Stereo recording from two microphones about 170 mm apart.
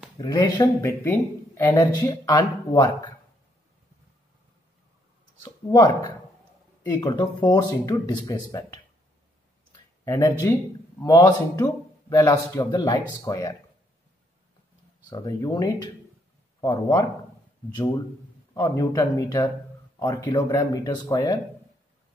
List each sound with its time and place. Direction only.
0.2 s speech: 20° left (ahead or behind)
5.4 s speech: 25° left (ahead or behind)
10.0 s speech: 20° left (ahead or behind)
15.0 s speech: 25° left (ahead or behind)
18.5 s speech: 20° left (ahead or behind)